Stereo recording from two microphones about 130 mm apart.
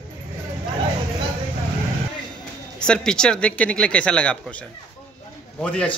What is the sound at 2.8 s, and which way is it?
Speech, 5° left (ahead or behind).